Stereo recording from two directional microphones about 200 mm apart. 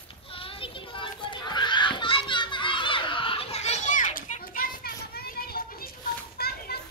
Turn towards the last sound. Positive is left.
turn(degrees=50)  # may be behind; listen again after turning